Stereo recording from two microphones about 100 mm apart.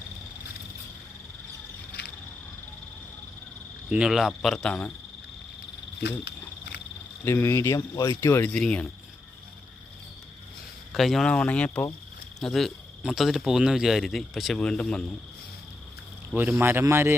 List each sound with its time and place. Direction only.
3.8 s speech: 10° right (ahead or behind); by 4.9 s 10° left (ahead or behind)
7.3 s speech: 20° left (ahead or behind)
7.9 s speech: 35° left (ahead or behind)
8.4 s speech: 10° left (ahead or behind)
10.9 s speech: centre (ahead or behind)
16.3 s speech: 20° right (ahead or behind)